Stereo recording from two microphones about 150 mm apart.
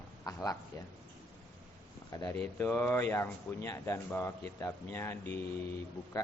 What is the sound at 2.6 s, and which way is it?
Speech, 15° left (ahead or behind).